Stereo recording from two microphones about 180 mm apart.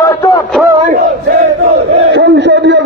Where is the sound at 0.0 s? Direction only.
20° left (ahead or behind).